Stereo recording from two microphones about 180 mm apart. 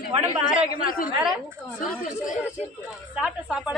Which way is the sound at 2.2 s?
45° left (ahead or behind).